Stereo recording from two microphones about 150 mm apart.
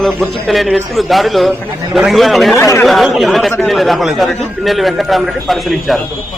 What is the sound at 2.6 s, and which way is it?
Speech, 15° left (ahead or behind).